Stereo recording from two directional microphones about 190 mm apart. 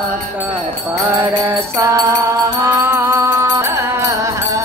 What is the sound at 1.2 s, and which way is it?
Music, 15° right (ahead or behind).